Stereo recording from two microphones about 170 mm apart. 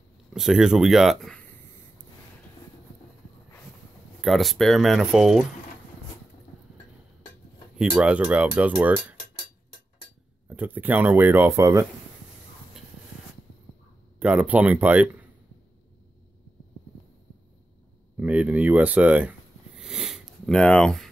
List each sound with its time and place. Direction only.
0.3 s speech: centre (ahead or behind)
4.2 s speech: centre (ahead or behind)
7.8 s speech: 5° right (ahead or behind)
10.5 s speech: 10° right (ahead or behind)
14.2 s speech: 10° right (ahead or behind)
18.2 s speech: 10° right (ahead or behind)
19.8 s sniff: 5° right (ahead or behind)